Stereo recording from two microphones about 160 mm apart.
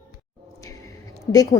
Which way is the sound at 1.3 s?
25° left (ahead or behind).